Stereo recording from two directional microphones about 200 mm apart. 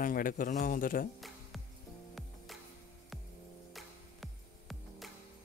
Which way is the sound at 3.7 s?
Centre (ahead or behind).